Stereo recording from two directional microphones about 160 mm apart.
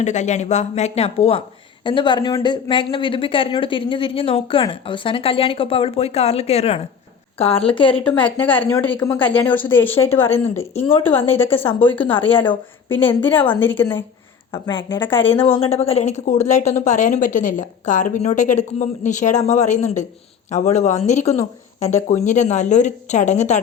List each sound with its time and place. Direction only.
0.0 s a woman's voice: 45° left (ahead or behind)
8.0 s a woman's voice: 10° left (ahead or behind)
11.4 s speech: 35° left (ahead or behind)
11.8 s a woman's voice: 10° left (ahead or behind)
14.5 s speech: 30° left (ahead or behind)
15.4 s a woman's voice: 15° left (ahead or behind)
15.6 s a woman's voice: 40° left (ahead or behind)